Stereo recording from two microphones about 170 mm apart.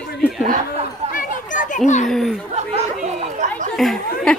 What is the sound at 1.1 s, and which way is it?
Children playing, 50° left (ahead or behind).